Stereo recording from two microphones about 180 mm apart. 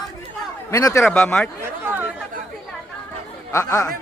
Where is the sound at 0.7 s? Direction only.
15° left (ahead or behind).